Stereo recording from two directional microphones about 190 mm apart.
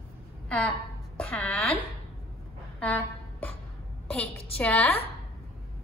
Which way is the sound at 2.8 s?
10° left (ahead or behind).